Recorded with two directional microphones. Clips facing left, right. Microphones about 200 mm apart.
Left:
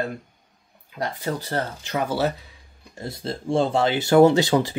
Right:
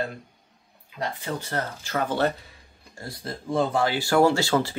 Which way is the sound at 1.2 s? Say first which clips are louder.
Left 5 dB; 35° left (ahead or behind).